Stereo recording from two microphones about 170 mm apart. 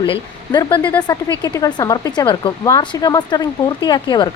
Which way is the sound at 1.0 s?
25° left (ahead or behind).